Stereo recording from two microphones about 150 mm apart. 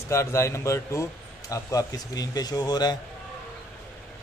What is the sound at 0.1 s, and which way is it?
A man's voice, 20° left (ahead or behind).